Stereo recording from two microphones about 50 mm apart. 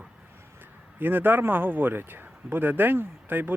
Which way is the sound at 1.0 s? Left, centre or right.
Right.